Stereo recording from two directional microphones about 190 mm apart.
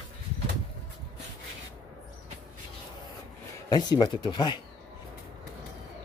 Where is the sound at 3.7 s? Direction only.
20° left (ahead or behind).